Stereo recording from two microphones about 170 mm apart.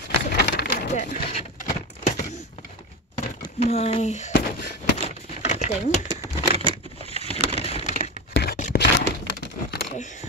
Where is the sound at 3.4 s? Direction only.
35° left (ahead or behind).